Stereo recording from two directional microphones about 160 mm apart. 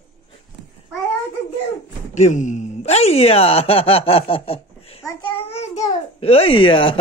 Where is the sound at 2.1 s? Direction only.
50° left (ahead or behind).